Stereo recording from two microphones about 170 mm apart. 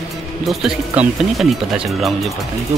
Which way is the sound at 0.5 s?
Centre (ahead or behind).